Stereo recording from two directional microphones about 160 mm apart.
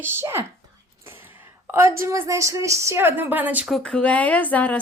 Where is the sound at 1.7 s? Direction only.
15° right (ahead or behind).